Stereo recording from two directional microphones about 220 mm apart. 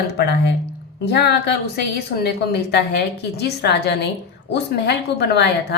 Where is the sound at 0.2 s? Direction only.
50° left (ahead or behind).